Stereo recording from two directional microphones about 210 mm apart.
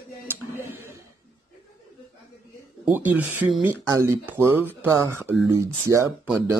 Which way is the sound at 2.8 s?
10° right (ahead or behind).